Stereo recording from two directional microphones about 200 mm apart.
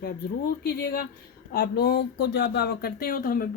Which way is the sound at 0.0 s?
50° left (ahead or behind).